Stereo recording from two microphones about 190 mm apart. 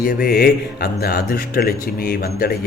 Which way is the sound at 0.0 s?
50° left (ahead or behind).